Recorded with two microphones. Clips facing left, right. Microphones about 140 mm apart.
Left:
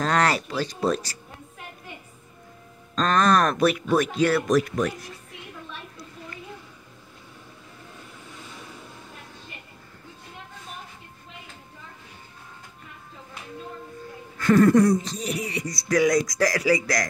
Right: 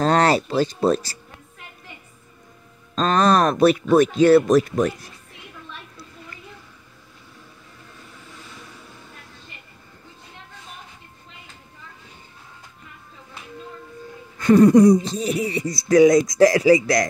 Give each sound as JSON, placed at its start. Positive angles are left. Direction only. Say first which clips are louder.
{"t": 0.0, "sound": "speech", "louder": "right 5 dB", "side_deg": -30}
{"t": 3.0, "sound": "speech", "louder": "right 3 dB", "side_deg": -25}
{"t": 14.4, "sound": "speech", "louder": "right 5 dB", "side_deg": -20}